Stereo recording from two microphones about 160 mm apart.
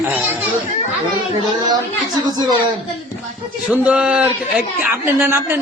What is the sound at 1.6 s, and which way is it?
Speech, 25° right (ahead or behind).